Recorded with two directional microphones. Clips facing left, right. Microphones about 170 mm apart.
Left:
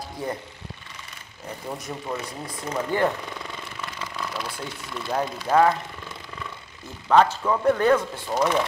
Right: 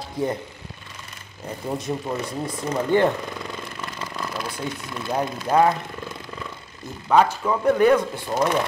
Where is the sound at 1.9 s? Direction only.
20° right (ahead or behind).